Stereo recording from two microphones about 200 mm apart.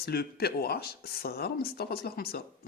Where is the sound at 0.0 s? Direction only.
50° left (ahead or behind).